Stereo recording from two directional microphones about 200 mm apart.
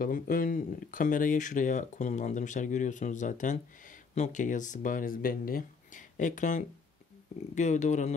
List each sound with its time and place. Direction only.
0.0 s speech: 45° left (ahead or behind)